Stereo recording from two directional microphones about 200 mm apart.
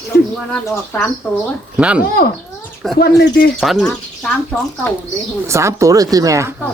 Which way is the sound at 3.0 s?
55° left (ahead or behind).